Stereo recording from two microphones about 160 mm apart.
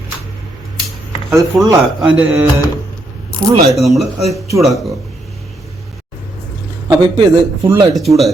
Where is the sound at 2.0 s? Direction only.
10° right (ahead or behind).